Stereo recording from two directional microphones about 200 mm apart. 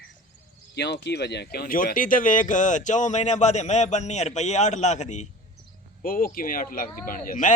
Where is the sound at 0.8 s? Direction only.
55° left (ahead or behind).